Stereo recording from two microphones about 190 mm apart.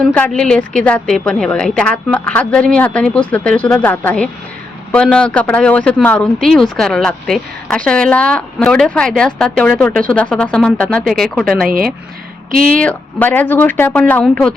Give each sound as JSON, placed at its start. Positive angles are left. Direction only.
{"t": 0.0, "sound": "speech", "side_deg": 5}
{"t": 11.6, "sound": "speech", "side_deg": -50}
{"t": 12.7, "sound": "speech", "side_deg": 5}